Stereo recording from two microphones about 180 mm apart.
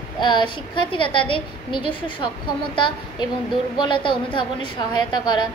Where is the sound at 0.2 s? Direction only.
25° left (ahead or behind).